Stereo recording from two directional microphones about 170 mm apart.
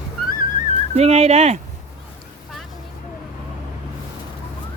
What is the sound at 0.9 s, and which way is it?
Speech, 40° right (ahead or behind).